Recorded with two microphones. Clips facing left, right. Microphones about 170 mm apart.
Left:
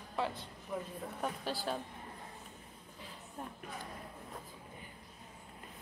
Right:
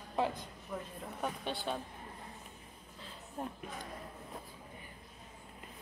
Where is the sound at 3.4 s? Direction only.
30° right (ahead or behind).